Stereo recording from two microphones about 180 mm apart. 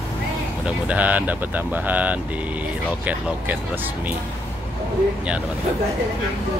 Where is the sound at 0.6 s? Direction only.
5° right (ahead or behind).